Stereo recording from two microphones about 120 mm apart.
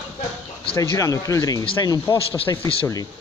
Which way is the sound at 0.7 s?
25° left (ahead or behind).